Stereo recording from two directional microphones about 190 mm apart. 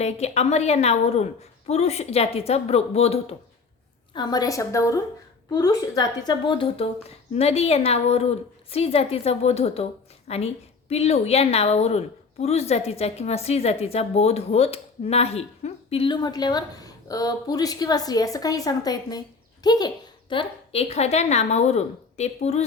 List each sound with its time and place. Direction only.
0.0 s a woman's voice: 35° left (ahead or behind)
4.1 s a woman's voice: 20° left (ahead or behind)
20.3 s a woman's voice: 30° left (ahead or behind)